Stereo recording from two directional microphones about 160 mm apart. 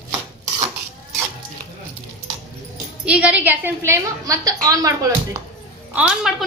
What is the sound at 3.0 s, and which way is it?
A woman's voice, 5° right (ahead or behind).